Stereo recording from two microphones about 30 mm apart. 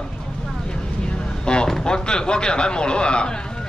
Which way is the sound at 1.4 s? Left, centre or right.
Left.